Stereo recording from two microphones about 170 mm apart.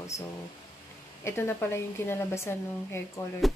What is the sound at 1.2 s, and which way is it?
A woman's voice, 15° left (ahead or behind).